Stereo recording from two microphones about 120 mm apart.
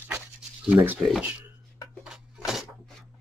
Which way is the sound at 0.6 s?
15° right (ahead or behind).